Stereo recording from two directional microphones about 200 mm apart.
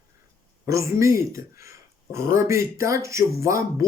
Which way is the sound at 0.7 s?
15° right (ahead or behind).